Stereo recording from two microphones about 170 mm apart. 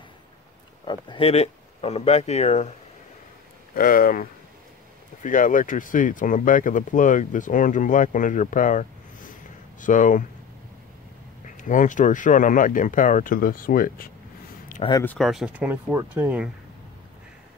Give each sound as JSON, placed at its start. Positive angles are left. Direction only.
{"t": 0.8, "sound": "speech", "side_deg": 30}
{"t": 3.7, "sound": "speech", "side_deg": 55}
{"t": 11.4, "sound": "speech", "side_deg": 50}
{"t": 14.8, "sound": "speech", "side_deg": 25}
{"t": 15.0, "sound": "speech", "side_deg": 0}